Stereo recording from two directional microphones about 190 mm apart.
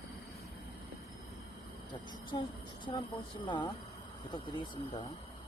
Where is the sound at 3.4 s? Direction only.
25° left (ahead or behind).